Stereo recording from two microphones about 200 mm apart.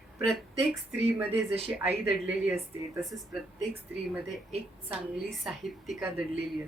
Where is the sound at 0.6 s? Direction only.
30° right (ahead or behind).